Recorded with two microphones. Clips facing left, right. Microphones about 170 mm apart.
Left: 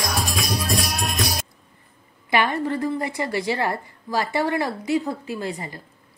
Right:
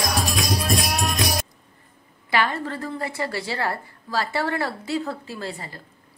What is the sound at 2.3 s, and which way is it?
A woman's voice, 15° left (ahead or behind).